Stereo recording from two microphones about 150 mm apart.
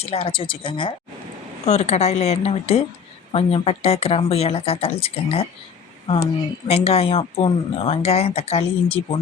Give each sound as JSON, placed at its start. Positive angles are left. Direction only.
{"t": 0.0, "sound": "speech", "side_deg": 40}
{"t": 1.6, "sound": "a woman's voice", "side_deg": 50}
{"t": 6.7, "sound": "speech", "side_deg": 40}